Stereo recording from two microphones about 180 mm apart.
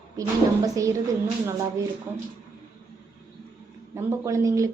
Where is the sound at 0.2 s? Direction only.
20° right (ahead or behind).